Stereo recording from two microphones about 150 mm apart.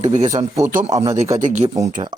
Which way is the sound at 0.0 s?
50° right (ahead or behind).